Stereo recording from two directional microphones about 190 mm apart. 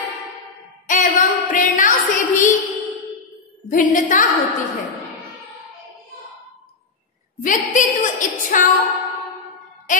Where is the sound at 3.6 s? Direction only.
45° left (ahead or behind).